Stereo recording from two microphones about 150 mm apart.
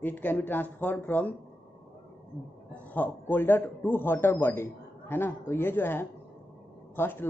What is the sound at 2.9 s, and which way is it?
Speech, 10° left (ahead or behind).